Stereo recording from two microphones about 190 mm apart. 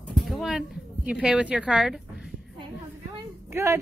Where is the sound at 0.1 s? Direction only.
Centre (ahead or behind).